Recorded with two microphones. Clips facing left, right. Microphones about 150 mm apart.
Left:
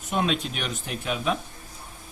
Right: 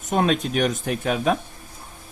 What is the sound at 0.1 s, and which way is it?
Speech, 45° right (ahead or behind).